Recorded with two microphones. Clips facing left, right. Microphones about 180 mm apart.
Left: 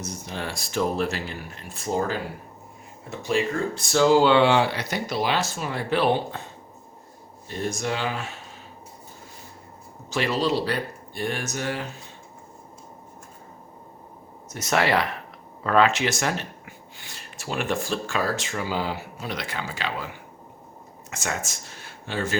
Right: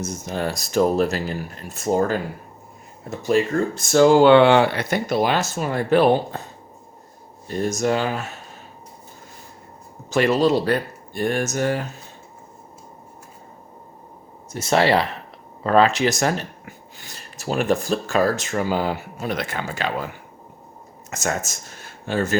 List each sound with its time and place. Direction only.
0.0 s speech: 45° right (ahead or behind)
7.4 s speech: 45° right (ahead or behind)
10.1 s speech: 50° right (ahead or behind)
14.5 s speech: 30° right (ahead or behind); by 20.1 s 50° right (ahead or behind)
21.1 s speech: 45° right (ahead or behind)